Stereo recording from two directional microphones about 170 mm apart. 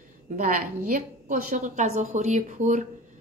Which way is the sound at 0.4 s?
55° right (ahead or behind).